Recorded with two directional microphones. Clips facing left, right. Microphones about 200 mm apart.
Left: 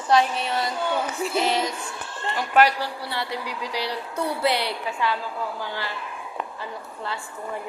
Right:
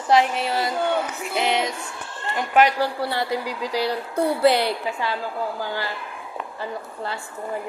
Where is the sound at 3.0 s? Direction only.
45° right (ahead or behind).